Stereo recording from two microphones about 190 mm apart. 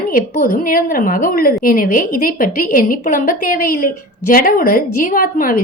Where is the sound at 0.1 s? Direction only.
45° left (ahead or behind).